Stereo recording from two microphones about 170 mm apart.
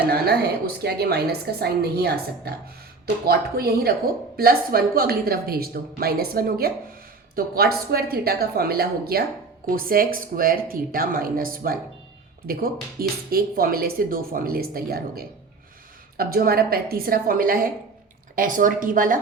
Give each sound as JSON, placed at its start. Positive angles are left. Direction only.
{"t": 0.1, "sound": "a woman's voice", "side_deg": -70}